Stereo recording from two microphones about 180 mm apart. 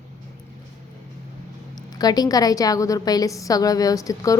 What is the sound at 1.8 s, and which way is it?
A woman's voice, 20° left (ahead or behind).